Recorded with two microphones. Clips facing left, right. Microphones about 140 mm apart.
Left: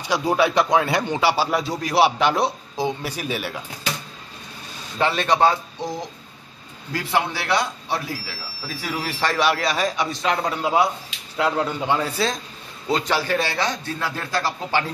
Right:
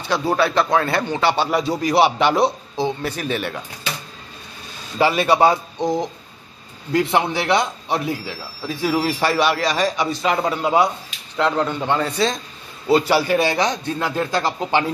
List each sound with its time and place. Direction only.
0.0 s speech: 15° left (ahead or behind)
2.8 s speech: 10° left (ahead or behind)
4.9 s a man's voice: 10° right (ahead or behind)
6.9 s a man's voice: 20° right (ahead or behind)
9.2 s a man's voice: 5° right (ahead or behind); by 14.9 s 20° right (ahead or behind)